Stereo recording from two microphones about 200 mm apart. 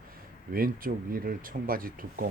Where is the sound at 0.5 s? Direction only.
45° right (ahead or behind).